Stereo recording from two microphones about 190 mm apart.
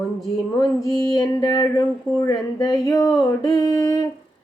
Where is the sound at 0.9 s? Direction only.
20° left (ahead or behind).